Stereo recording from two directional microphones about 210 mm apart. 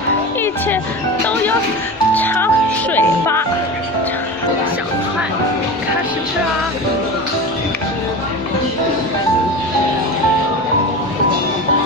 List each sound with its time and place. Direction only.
2.1 s music: 10° left (ahead or behind)